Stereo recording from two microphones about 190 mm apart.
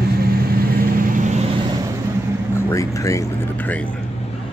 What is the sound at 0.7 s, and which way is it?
Vehicle, 45° right (ahead or behind).